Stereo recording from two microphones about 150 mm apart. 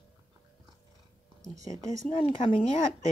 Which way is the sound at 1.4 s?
20° right (ahead or behind).